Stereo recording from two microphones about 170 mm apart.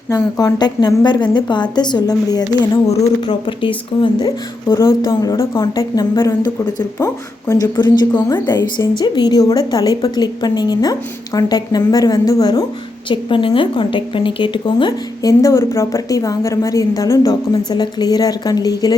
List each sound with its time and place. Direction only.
0.1 s speech: 20° left (ahead or behind)
2.8 s speech: 40° left (ahead or behind)
3.2 s speech: 30° left (ahead or behind)
4.6 s speech: 20° left (ahead or behind)